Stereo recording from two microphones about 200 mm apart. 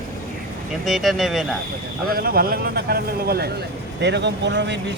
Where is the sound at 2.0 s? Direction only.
50° right (ahead or behind).